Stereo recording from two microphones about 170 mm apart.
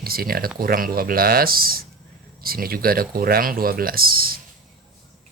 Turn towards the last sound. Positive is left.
turn(degrees=-60)  # may be behind; listen again after turning